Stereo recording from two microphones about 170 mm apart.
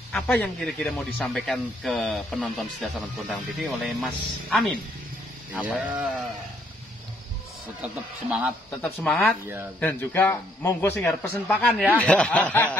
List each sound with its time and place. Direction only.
0.1 s speech: 10° left (ahead or behind); by 5.9 s 10° right (ahead or behind)
8.8 s a man's voice: 5° left (ahead or behind)